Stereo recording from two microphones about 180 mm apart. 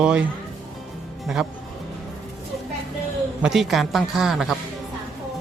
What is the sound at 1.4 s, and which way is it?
Speech, centre (ahead or behind).